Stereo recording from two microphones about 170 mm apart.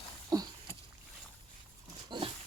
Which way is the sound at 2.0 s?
25° right (ahead or behind).